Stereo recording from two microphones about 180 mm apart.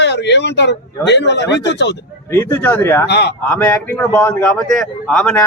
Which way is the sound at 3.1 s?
70° left (ahead or behind).